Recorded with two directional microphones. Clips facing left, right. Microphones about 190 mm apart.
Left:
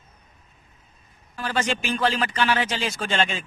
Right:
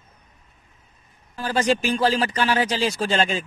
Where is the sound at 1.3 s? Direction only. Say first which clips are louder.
Right 5 dB; 35° right (ahead or behind).